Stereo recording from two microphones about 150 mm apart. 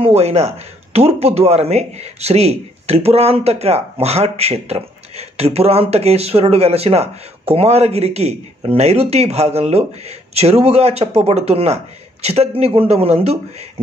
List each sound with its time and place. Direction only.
0.0 s speech: 45° right (ahead or behind)